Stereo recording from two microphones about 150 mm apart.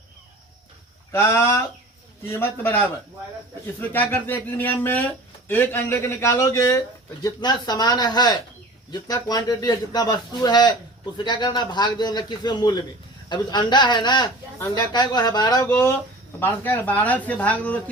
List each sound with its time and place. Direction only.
1.1 s speech: 15° left (ahead or behind)
15.6 s speech: 15° left (ahead or behind)